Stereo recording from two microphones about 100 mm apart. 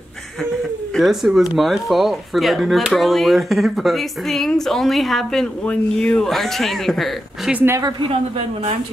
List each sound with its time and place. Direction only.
0.9 s speech: centre (ahead or behind)
7.5 s a woman's voice: 25° right (ahead or behind)